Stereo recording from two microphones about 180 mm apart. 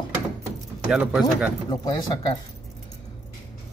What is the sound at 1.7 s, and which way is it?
Speech, 20° left (ahead or behind).